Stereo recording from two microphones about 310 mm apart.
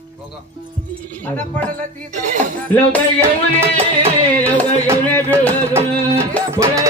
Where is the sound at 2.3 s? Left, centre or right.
Centre.